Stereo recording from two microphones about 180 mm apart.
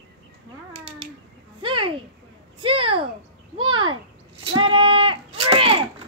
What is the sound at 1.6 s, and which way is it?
A child's voice, 30° right (ahead or behind).